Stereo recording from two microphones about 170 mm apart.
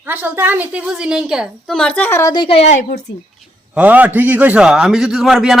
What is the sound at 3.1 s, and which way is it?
Speech, 90° left.